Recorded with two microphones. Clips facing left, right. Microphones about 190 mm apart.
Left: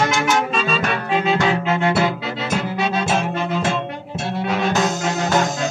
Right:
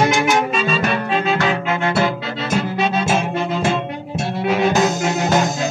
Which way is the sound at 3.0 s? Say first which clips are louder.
Right 2 dB; 10° right (ahead or behind).